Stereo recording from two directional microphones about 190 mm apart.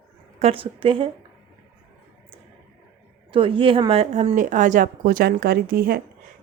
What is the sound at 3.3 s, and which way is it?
A woman's voice, 25° right (ahead or behind).